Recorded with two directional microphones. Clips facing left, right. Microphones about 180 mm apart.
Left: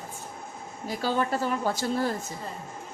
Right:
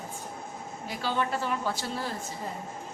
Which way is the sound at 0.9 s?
40° left (ahead or behind).